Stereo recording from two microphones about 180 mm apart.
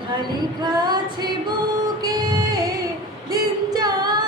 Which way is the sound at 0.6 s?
25° right (ahead or behind).